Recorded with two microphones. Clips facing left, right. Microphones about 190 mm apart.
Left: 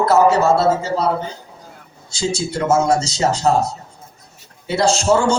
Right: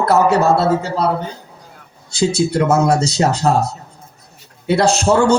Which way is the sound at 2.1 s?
60° right (ahead or behind).